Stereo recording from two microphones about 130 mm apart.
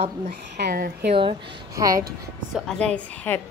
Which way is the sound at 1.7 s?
25° right (ahead or behind).